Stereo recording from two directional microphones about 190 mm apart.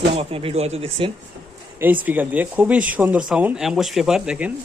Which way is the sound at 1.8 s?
10° right (ahead or behind).